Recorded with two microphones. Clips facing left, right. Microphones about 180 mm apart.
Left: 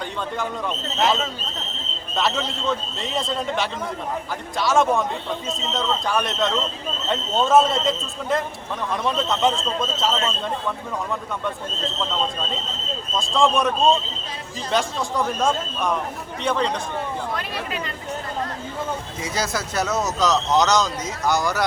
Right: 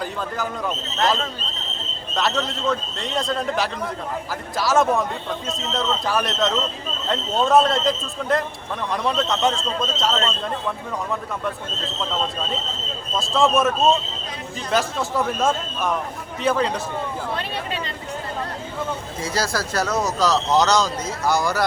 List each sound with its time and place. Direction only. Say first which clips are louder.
0.0 s a man's voice: right 1 dB; centre (ahead or behind)
13.1 s a man's voice: right 1 dB; 5° right (ahead or behind)
17.3 s speech: right 1 dB; 30° right (ahead or behind)
19.2 s speech: right 3 dB; 20° left (ahead or behind)
20.1 s a man's voice: even; centre (ahead or behind)